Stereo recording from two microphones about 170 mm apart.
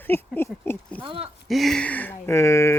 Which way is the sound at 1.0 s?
30° right (ahead or behind).